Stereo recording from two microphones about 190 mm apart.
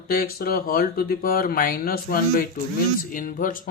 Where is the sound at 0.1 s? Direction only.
50° left (ahead or behind).